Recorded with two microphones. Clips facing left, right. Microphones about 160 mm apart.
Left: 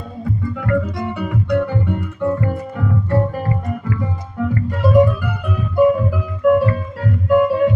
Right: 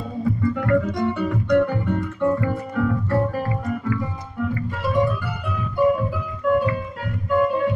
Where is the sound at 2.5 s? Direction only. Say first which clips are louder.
Even; 20° left (ahead or behind).